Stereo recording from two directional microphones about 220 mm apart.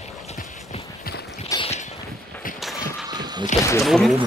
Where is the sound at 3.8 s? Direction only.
Centre (ahead or behind).